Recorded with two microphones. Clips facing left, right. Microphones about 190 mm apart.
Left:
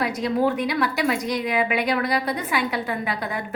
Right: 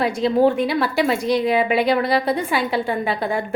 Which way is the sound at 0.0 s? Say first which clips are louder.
Right 5 dB; 30° right (ahead or behind).